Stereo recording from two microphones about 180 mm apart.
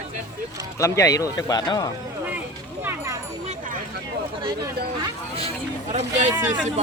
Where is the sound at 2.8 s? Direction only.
15° right (ahead or behind).